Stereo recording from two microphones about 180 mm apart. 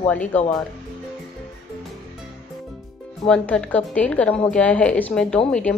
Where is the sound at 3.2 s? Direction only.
5° left (ahead or behind).